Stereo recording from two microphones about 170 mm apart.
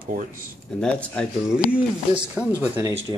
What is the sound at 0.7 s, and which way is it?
Speech, 5° left (ahead or behind).